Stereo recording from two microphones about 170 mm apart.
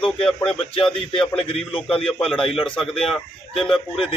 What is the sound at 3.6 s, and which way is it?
Speech, 30° left (ahead or behind).